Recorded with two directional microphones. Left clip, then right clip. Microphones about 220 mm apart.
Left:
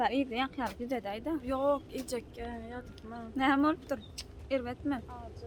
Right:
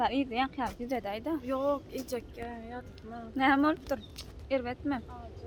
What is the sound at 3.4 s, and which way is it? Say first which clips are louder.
Speech: right 2 dB; 15° right (ahead or behind).